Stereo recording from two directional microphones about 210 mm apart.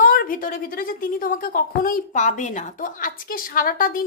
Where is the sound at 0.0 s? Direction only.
40° left (ahead or behind).